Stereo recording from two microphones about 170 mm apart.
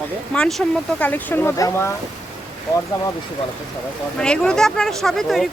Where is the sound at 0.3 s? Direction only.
5° left (ahead or behind).